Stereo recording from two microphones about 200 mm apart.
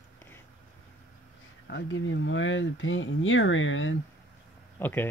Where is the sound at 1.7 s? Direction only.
70° left (ahead or behind).